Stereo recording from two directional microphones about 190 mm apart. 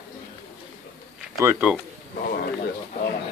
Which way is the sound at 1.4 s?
15° right (ahead or behind).